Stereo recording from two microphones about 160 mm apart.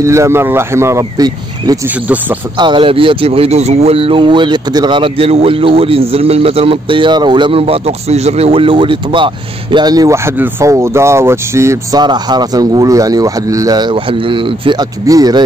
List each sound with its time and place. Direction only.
0.0 s speech: 20° right (ahead or behind)